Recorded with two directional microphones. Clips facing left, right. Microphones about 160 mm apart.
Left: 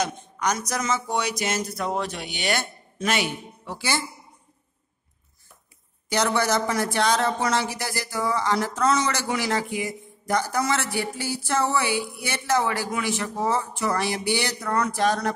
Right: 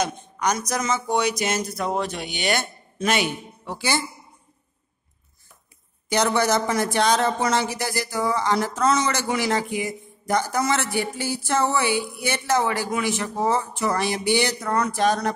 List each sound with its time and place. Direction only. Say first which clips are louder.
0.0 s speech: right 2 dB; 20° right (ahead or behind)
6.0 s speech: right 2 dB; 20° right (ahead or behind)